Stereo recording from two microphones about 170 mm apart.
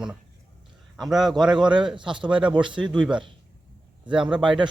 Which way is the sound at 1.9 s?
30° right (ahead or behind).